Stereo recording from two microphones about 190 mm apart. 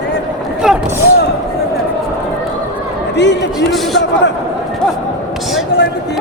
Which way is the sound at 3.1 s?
65° left (ahead or behind).